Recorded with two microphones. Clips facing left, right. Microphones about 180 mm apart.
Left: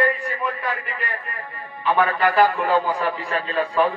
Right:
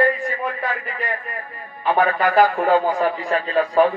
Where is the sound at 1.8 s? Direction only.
45° right (ahead or behind).